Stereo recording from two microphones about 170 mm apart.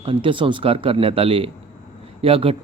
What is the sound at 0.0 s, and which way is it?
Speech, 30° right (ahead or behind).